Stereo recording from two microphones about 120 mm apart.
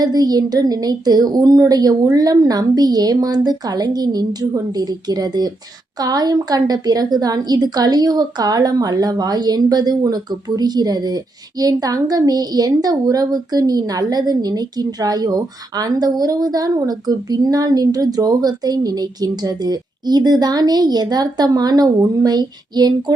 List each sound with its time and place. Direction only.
0.0 s a woman's voice: 35° right (ahead or behind)